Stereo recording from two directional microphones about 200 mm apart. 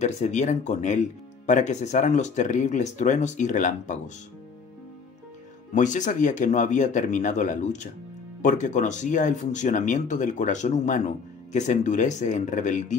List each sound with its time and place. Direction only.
0.0 s speech: 35° left (ahead or behind)
5.7 s speech: 40° left (ahead or behind)